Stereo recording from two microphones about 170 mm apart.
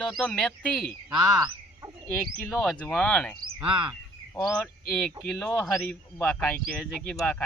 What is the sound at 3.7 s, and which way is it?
Speech, 30° right (ahead or behind).